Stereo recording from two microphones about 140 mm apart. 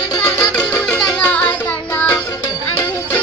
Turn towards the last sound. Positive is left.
turn(degrees=20)  # may be behind; listen again after turning